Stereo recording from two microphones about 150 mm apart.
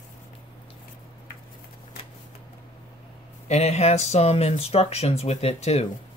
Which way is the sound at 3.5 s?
45° left (ahead or behind).